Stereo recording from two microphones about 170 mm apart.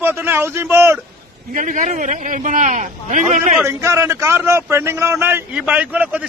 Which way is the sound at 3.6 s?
15° right (ahead or behind).